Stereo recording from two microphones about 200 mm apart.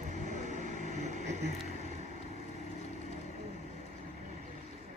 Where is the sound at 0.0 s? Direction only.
40° right (ahead or behind).